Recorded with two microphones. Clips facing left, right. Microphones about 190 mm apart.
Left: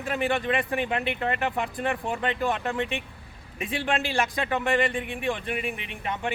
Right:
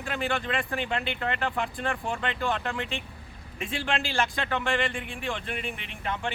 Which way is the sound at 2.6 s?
15° left (ahead or behind).